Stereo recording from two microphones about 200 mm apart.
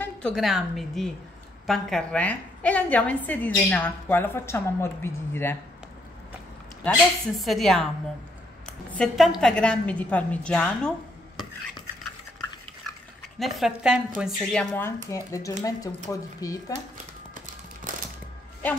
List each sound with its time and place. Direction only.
0.0 s a woman's voice: 5° left (ahead or behind)
6.8 s a woman's voice: 5° left (ahead or behind)
13.4 s a woman's voice: centre (ahead or behind); by 16.7 s 15° left (ahead or behind)